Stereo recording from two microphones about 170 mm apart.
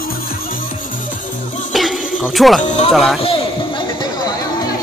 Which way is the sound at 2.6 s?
45° left (ahead or behind).